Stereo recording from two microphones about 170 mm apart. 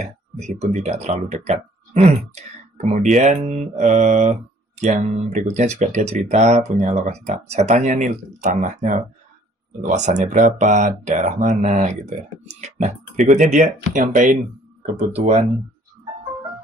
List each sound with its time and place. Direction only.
0.0 s speech: 45° right (ahead or behind)